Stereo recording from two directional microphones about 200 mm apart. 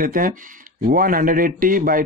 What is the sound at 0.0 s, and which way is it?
Speech, 45° right (ahead or behind).